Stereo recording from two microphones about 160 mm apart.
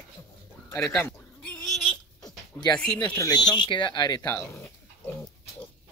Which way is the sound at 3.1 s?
25° left (ahead or behind).